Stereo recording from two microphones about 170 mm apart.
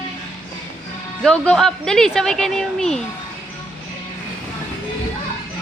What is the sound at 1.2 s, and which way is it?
Speech, centre (ahead or behind).